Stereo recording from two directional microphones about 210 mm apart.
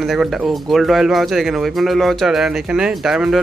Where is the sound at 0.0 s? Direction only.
Centre (ahead or behind).